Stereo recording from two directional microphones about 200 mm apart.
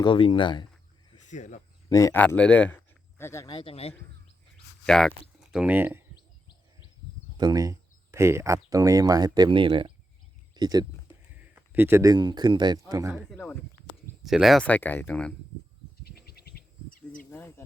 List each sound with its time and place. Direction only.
0.0 s speech: 25° left (ahead or behind)
1.3 s speech: 40° left (ahead or behind)
1.9 s speech: 15° left (ahead or behind)
3.4 s speech: 25° left (ahead or behind)
4.9 s speech: 5° left (ahead or behind)
7.3 s speech: 20° right (ahead or behind)
11.3 s speech: 10° right (ahead or behind)
13.3 s speech: 10° left (ahead or behind)
16.0 s insect: 50° left (ahead or behind)